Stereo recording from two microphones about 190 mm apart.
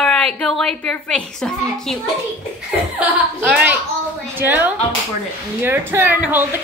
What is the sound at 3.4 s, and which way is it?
A woman's voice, 10° right (ahead or behind).